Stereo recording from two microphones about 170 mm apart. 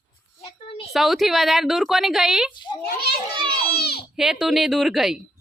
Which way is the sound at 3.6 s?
65° left (ahead or behind).